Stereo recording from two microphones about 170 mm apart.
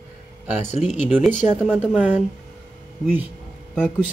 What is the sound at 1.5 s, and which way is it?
Speech, 10° right (ahead or behind).